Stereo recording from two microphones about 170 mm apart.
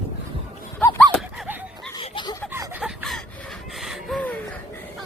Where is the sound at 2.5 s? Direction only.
15° right (ahead or behind).